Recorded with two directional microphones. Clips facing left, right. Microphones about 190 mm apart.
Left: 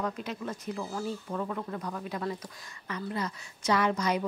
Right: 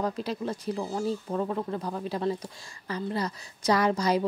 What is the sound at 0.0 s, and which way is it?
Speech, 35° right (ahead or behind).